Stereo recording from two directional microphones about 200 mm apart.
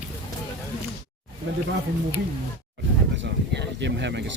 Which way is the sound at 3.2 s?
60° right (ahead or behind).